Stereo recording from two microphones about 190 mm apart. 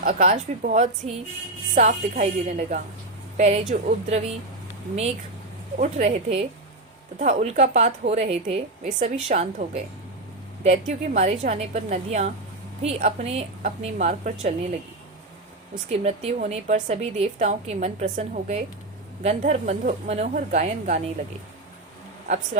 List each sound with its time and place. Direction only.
0.0 s a woman's voice: 40° right (ahead or behind)
5.7 s a woman's voice: 40° right (ahead or behind)
15.9 s a woman's voice: 35° right (ahead or behind)